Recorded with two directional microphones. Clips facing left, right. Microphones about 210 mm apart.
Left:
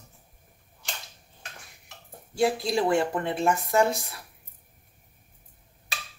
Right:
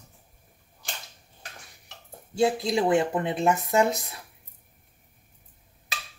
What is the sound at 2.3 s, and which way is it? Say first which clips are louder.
Speech: right 1 dB; 20° right (ahead or behind).